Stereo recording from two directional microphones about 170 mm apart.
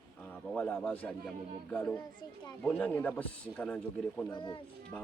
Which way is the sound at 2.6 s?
10° left (ahead or behind).